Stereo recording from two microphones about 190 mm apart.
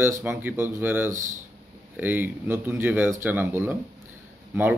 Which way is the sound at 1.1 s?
40° right (ahead or behind).